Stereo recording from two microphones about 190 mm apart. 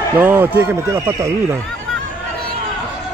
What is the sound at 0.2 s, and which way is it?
Speech, 10° right (ahead or behind).